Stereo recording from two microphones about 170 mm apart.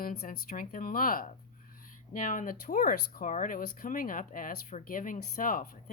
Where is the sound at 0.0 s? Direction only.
55° left (ahead or behind).